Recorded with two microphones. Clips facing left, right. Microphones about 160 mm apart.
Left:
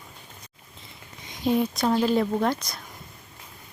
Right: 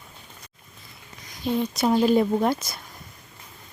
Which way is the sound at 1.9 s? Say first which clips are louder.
Right 4 dB; 15° right (ahead or behind).